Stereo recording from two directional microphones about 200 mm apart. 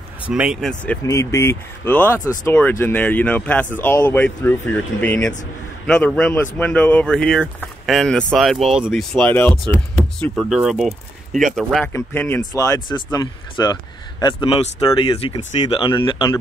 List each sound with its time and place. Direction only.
0.2 s speech: 5° right (ahead or behind); by 16.3 s 20° left (ahead or behind)